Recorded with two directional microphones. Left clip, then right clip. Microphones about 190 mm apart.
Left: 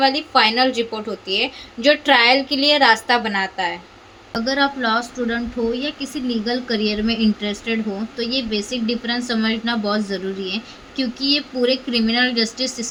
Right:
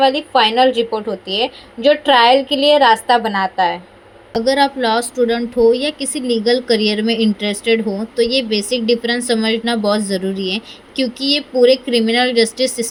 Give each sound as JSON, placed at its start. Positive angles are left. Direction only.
{"t": 0.0, "sound": "a woman's voice", "side_deg": 0}
{"t": 4.4, "sound": "a woman's voice", "side_deg": -20}